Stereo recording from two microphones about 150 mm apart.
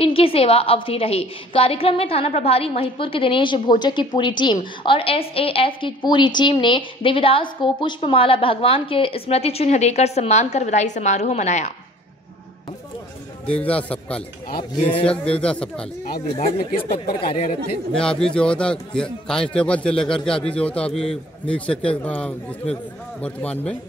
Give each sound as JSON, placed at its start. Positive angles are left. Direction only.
{"t": 0.0, "sound": "a woman's voice", "side_deg": 40}
{"t": 13.5, "sound": "a man's voice", "side_deg": 10}
{"t": 14.6, "sound": "a woman's voice", "side_deg": 35}
{"t": 15.0, "sound": "a man's voice", "side_deg": 5}
{"t": 16.7, "sound": "a woman's voice", "side_deg": 40}
{"t": 17.9, "sound": "a man's voice", "side_deg": 5}
{"t": 23.2, "sound": "a man's voice", "side_deg": 10}